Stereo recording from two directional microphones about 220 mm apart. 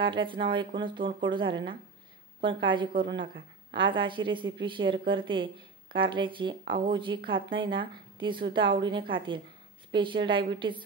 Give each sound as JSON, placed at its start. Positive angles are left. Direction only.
{"t": 0.0, "sound": "a woman's voice", "side_deg": -20}